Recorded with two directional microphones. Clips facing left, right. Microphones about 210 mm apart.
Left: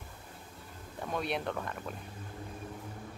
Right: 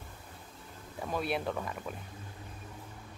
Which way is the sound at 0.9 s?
5° right (ahead or behind).